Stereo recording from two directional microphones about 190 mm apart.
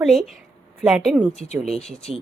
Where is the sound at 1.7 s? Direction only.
5° left (ahead or behind).